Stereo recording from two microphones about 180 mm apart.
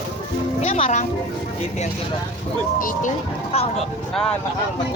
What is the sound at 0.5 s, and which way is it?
Music, 35° left (ahead or behind).